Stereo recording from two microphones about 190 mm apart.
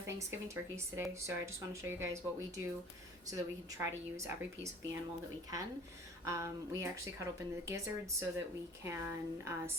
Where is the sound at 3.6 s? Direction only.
15° right (ahead or behind).